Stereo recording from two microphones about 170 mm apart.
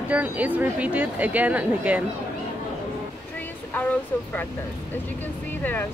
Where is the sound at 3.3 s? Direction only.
10° left (ahead or behind).